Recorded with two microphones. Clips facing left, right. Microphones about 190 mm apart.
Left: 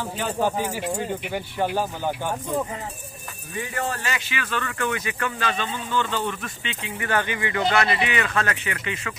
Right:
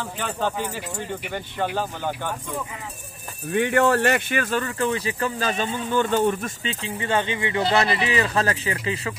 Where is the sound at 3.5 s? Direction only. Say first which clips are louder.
Right 10 dB; 70° right (ahead or behind).